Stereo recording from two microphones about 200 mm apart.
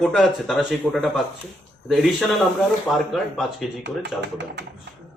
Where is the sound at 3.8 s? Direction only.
60° right (ahead or behind).